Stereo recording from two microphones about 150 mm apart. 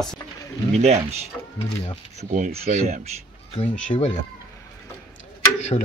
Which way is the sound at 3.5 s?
55° left (ahead or behind).